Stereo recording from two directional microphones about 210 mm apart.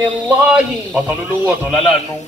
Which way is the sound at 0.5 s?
5° right (ahead or behind).